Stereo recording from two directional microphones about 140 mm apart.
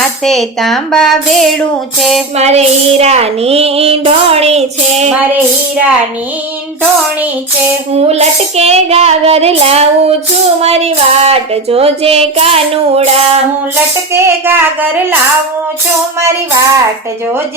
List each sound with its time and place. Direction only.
0.3 s a woman's voice: centre (ahead or behind)
2.4 s child singing: 50° right (ahead or behind)
5.3 s child singing: 10° right (ahead or behind)
7.9 s child singing: 50° right (ahead or behind)
14.1 s child singing: 20° right (ahead or behind)